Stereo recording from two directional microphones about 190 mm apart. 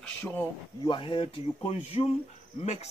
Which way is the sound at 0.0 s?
10° left (ahead or behind).